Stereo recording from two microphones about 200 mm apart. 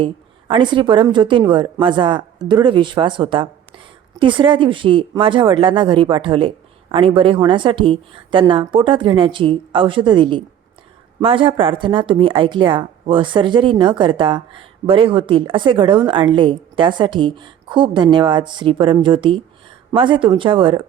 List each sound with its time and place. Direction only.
0.0 s a woman's voice: 25° right (ahead or behind)